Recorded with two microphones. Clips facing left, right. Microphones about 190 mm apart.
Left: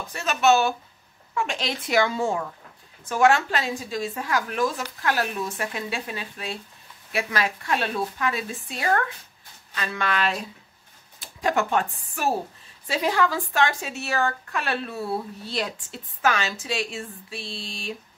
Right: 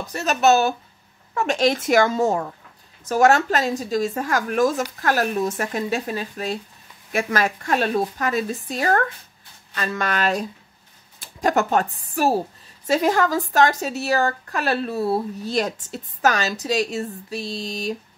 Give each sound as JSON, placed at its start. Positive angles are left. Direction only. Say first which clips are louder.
{"t": 0.0, "sound": "a woman's voice", "louder": "right 3 dB", "side_deg": -40}